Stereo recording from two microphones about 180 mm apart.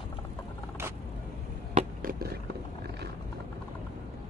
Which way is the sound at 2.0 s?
50° right (ahead or behind).